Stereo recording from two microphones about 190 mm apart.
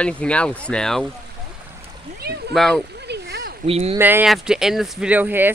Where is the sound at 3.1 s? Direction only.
60° right (ahead or behind).